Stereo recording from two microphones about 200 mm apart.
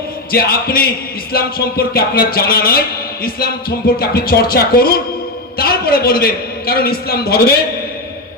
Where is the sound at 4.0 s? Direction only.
50° left (ahead or behind).